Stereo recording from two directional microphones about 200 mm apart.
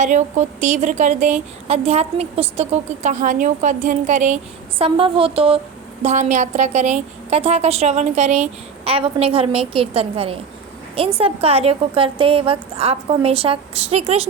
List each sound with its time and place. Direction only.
0.0 s a woman's voice: 35° right (ahead or behind)
4.8 s a woman's voice: 25° right (ahead or behind)